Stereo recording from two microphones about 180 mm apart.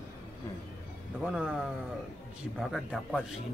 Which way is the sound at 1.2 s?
5° right (ahead or behind).